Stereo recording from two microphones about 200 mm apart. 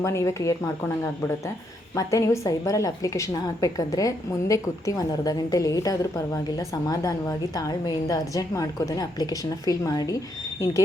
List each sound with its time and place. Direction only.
0.0 s a woman's voice: 15° left (ahead or behind)
2.0 s a woman's voice: 15° left (ahead or behind)